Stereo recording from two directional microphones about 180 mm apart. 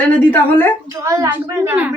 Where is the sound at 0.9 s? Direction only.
15° right (ahead or behind).